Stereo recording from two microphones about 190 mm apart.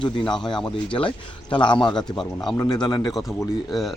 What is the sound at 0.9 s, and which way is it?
Speech, 25° left (ahead or behind).